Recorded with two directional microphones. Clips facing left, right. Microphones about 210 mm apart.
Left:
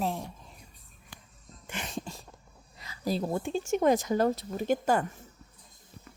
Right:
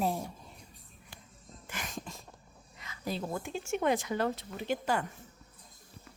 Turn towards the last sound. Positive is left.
turn(degrees=45)  # may be behind; listen again after turning